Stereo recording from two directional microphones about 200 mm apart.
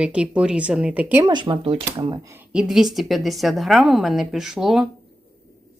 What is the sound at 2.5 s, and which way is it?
A woman's voice, 5° right (ahead or behind).